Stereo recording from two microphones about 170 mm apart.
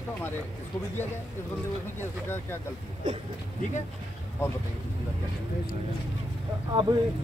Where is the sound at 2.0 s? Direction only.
15° left (ahead or behind).